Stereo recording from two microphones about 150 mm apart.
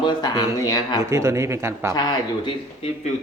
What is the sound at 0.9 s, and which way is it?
A man's voice, 20° right (ahead or behind).